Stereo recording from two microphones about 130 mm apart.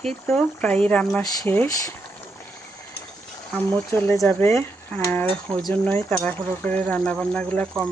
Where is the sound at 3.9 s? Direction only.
15° left (ahead or behind).